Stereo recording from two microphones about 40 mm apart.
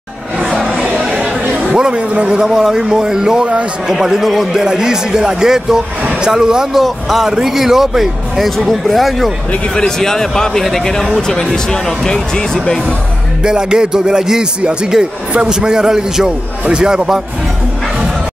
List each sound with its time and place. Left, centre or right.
1.7 s a man's voice: centre
2.4 s speech: centre
6.7 s speech: centre
8.5 s speech: centre
9.8 s speech: centre
13.4 s a man's voice: centre